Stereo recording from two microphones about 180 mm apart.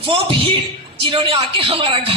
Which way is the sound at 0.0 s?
30° right (ahead or behind).